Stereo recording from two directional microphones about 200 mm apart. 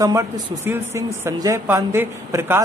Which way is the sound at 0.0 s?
15° right (ahead or behind).